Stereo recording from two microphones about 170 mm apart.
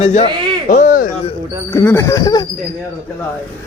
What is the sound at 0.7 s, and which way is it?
Speech, 50° left (ahead or behind).